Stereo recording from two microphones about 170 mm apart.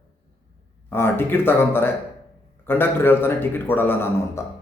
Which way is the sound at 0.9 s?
15° left (ahead or behind).